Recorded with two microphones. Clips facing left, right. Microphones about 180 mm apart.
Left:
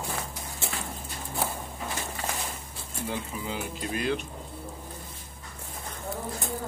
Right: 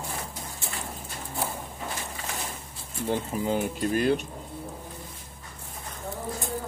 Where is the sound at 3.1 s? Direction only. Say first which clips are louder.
Right 8 dB; 45° right (ahead or behind).